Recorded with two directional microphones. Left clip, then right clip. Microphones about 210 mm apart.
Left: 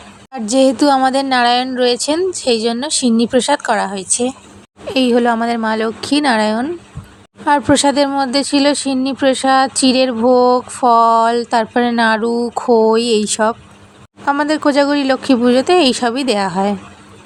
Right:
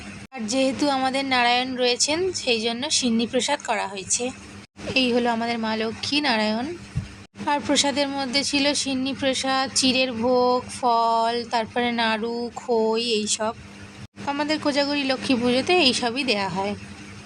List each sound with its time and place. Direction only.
0.3 s a woman's voice: 35° left (ahead or behind)